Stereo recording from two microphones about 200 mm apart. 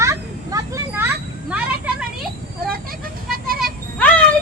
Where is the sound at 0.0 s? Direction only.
15° right (ahead or behind).